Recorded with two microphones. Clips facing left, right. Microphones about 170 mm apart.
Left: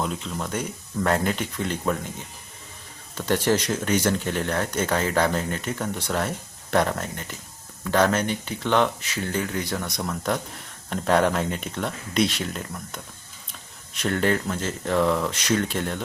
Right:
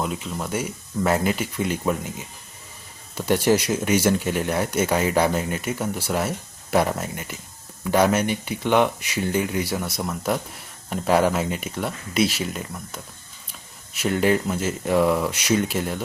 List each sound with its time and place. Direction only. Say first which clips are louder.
0.0 s speech: right 1 dB; 5° right (ahead or behind)